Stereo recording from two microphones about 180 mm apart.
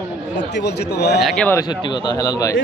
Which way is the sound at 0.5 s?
70° left (ahead or behind).